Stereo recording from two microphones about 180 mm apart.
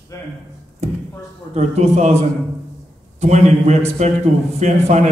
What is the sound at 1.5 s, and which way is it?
Speech, 40° right (ahead or behind).